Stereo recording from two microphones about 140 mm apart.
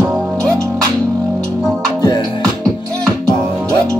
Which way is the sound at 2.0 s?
30° left (ahead or behind).